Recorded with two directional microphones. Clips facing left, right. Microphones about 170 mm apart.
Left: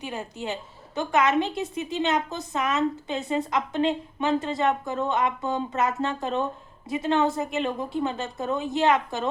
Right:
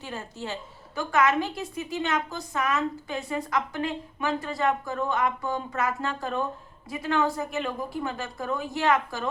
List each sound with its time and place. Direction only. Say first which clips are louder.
0.0 s a woman's voice: left 3 dB; 15° left (ahead or behind)